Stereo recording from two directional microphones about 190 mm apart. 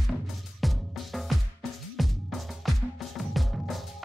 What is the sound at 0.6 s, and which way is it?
Music, centre (ahead or behind).